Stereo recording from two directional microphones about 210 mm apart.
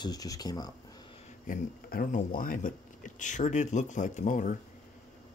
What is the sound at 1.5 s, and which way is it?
Speech, 40° left (ahead or behind).